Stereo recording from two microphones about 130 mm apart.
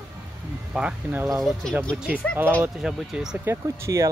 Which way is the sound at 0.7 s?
5° right (ahead or behind).